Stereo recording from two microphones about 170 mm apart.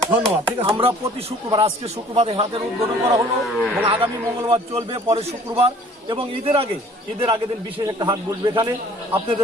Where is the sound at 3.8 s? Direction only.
30° right (ahead or behind).